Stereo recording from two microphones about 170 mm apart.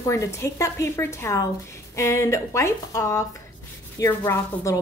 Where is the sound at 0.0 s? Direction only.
15° left (ahead or behind).